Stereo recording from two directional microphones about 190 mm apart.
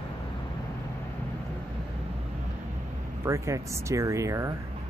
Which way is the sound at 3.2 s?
15° right (ahead or behind).